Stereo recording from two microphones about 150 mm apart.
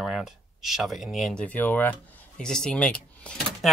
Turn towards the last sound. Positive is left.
turn(degrees=5)  # may be behind; listen again after turning